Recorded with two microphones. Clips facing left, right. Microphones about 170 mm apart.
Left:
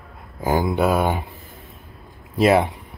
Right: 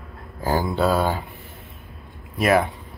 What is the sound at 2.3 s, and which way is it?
Speech, 25° left (ahead or behind).